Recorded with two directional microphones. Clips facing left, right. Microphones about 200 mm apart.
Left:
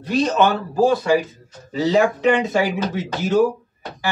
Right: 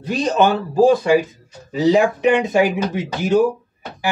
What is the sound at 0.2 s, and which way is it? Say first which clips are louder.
Speech: right 2 dB; 15° right (ahead or behind).